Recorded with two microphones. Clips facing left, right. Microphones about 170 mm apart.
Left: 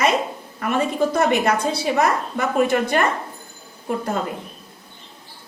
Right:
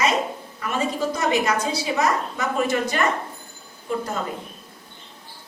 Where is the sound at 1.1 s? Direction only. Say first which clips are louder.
Left 3 dB; 60° left (ahead or behind).